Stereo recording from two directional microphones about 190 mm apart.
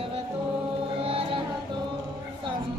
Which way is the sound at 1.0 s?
30° right (ahead or behind).